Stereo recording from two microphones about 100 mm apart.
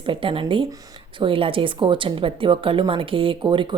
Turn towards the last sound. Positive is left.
turn(degrees=-55)  # may be behind; listen again after turning